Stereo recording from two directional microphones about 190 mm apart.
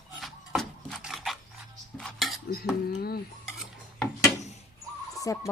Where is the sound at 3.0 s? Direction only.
55° left (ahead or behind).